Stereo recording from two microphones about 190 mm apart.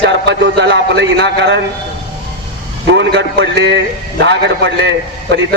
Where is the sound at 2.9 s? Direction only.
65° right (ahead or behind).